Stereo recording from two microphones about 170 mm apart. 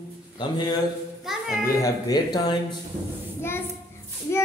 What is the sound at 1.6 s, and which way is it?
Speech, 20° left (ahead or behind).